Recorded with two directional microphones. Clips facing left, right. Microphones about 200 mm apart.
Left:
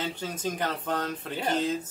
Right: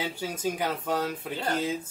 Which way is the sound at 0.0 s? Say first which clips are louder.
Right 1 dB; 10° right (ahead or behind).